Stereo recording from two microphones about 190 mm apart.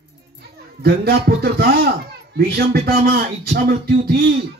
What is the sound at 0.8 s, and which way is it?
Music, 55° right (ahead or behind).